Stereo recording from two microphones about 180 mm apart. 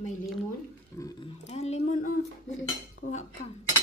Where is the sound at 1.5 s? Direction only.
35° left (ahead or behind).